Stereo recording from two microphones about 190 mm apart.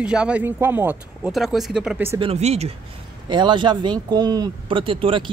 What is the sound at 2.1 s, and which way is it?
A man's voice, 30° right (ahead or behind).